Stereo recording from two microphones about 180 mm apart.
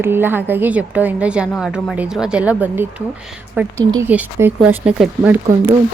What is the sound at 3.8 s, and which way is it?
Speech, 20° right (ahead or behind).